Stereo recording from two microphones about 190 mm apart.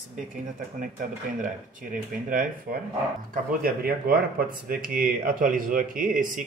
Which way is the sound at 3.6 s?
50° right (ahead or behind).